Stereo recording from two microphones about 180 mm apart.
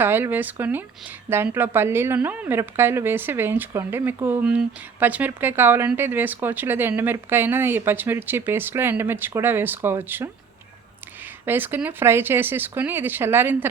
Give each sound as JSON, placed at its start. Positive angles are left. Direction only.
{"t": 0.0, "sound": "a woman's voice", "side_deg": -10}
{"t": 11.4, "sound": "a woman's voice", "side_deg": -10}